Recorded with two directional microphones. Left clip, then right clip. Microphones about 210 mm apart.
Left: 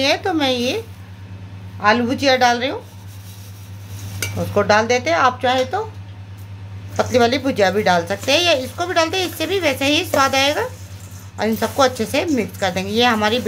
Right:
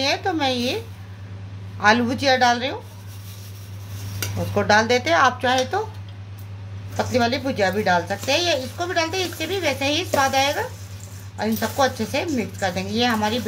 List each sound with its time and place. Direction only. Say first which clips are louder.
0.0 s a woman's voice: left 4 dB; 20° left (ahead or behind)
1.8 s a woman's voice: left 2 dB; 5° left (ahead or behind)
4.6 s speech: left 2 dB; 10° left (ahead or behind)
7.0 s a woman's voice: left 5 dB; 20° left (ahead or behind)